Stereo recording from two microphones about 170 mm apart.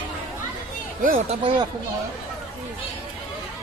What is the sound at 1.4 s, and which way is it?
Speech, 30° right (ahead or behind).